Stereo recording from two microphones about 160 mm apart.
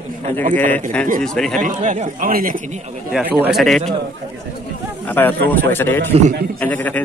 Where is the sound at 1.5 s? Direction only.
50° right (ahead or behind).